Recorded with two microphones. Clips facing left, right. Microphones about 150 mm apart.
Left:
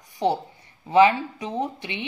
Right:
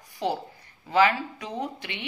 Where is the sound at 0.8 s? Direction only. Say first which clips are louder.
Left 5 dB; 25° left (ahead or behind).